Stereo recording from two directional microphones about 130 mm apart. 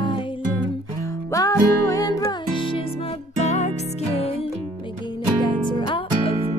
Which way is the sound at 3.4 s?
60° left (ahead or behind).